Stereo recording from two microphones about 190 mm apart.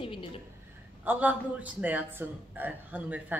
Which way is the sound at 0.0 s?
25° left (ahead or behind).